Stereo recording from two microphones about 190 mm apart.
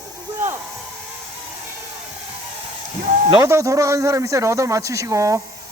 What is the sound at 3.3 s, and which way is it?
Speech, 15° right (ahead or behind).